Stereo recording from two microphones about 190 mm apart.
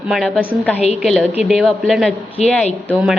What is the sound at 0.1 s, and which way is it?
Speech, centre (ahead or behind).